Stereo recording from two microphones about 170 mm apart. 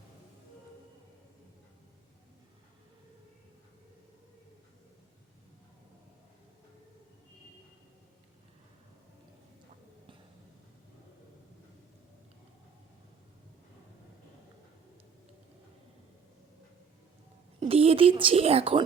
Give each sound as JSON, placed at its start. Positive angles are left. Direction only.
{"t": 17.6, "sound": "a woman's voice", "side_deg": -35}